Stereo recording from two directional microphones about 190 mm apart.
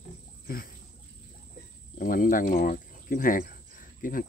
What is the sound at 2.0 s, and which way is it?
Speech, 45° left (ahead or behind).